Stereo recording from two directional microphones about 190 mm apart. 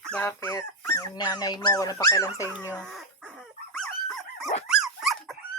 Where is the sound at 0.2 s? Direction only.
15° left (ahead or behind); by 3.5 s 5° right (ahead or behind).